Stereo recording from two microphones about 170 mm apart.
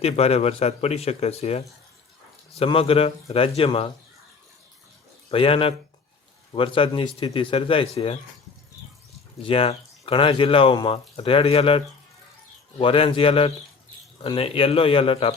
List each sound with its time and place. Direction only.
0.0 s speech: 35° left (ahead or behind)
5.3 s speech: 35° left (ahead or behind)
9.4 s speech: 35° left (ahead or behind)
12.8 s speech: 30° left (ahead or behind)